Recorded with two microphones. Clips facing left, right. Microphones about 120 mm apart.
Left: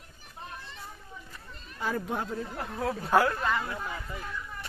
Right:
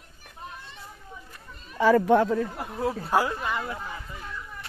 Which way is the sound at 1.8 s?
90° right.